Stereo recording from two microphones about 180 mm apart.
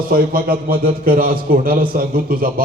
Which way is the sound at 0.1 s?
55° right (ahead or behind).